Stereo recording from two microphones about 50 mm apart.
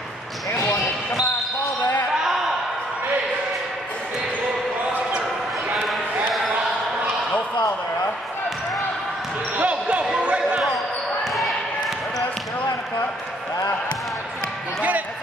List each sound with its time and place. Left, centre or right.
5.9 s basketball bounce: centre
9.6 s basketball bounce: right
11.2 s basketball bounce: centre
14.8 s music: right